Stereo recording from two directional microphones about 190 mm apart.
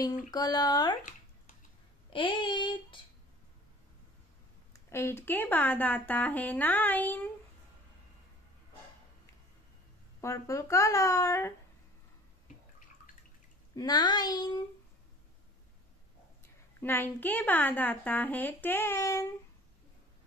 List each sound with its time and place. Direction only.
0.3 s speech: 20° left (ahead or behind)
2.1 s speech: 25° left (ahead or behind)
4.7 s speech: 15° left (ahead or behind)
10.2 s speech: 15° left (ahead or behind)
13.7 s speech: 20° left (ahead or behind)
16.8 s speech: 10° left (ahead or behind)